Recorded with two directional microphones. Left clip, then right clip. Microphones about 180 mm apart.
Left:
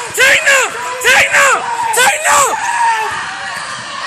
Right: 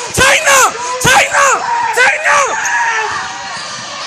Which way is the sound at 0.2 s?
25° right (ahead or behind).